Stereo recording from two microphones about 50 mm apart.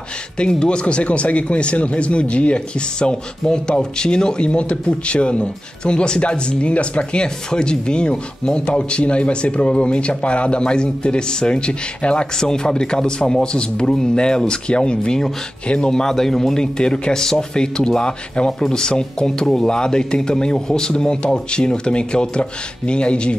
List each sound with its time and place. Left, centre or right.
0.4 s speech: centre